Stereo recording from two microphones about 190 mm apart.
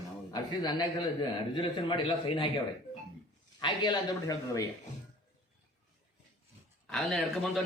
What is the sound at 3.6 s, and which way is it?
Speech, 25° left (ahead or behind).